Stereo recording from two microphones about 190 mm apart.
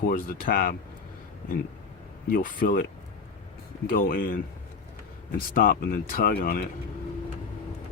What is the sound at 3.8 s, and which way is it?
Speech, 50° left (ahead or behind).